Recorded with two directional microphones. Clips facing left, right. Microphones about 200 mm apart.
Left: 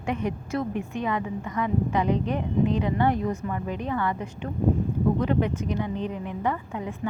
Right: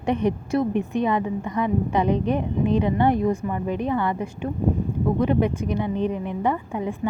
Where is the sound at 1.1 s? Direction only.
25° right (ahead or behind).